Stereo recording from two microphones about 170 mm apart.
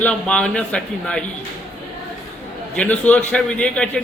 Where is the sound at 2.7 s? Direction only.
5° left (ahead or behind).